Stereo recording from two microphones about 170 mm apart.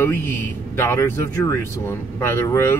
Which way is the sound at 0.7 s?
15° left (ahead or behind).